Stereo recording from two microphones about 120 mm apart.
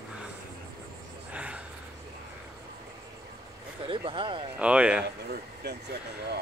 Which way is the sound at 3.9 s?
45° right (ahead or behind).